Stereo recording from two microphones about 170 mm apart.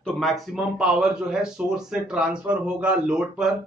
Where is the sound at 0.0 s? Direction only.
Centre (ahead or behind).